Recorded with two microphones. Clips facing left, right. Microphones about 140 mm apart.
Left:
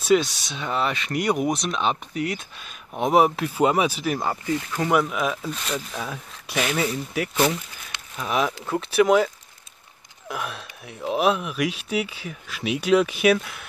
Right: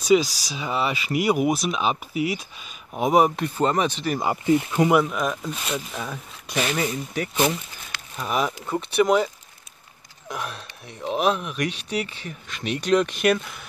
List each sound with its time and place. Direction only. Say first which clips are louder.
0.0 s speech: right 1 dB; centre (ahead or behind)
4.2 s speech: right 5 dB; 20° right (ahead or behind)
4.9 s speech: right 1 dB; centre (ahead or behind)